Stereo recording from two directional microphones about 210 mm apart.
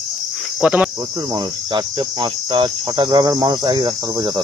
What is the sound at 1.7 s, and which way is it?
Cricket, 20° right (ahead or behind).